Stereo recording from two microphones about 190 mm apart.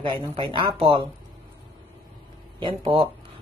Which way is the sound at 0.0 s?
25° right (ahead or behind).